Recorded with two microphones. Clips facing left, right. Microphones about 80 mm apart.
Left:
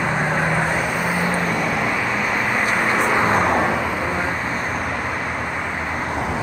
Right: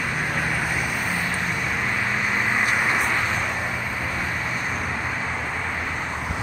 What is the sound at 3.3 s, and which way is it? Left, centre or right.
Vehicle, left.